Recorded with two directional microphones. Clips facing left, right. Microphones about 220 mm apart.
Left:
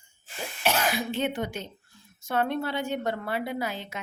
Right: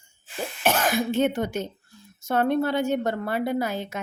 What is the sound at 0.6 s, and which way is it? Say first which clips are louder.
A woman's voice: right 4 dB; 45° right (ahead or behind).